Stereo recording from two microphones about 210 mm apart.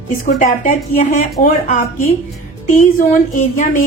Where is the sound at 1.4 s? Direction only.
35° left (ahead or behind).